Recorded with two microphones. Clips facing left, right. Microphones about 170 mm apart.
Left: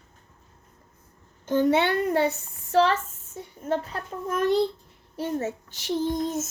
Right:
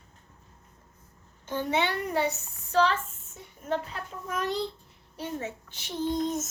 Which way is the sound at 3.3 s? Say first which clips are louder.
Left 4 dB; 40° left (ahead or behind).